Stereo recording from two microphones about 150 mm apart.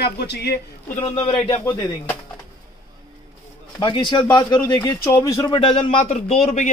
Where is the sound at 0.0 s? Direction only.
90° left.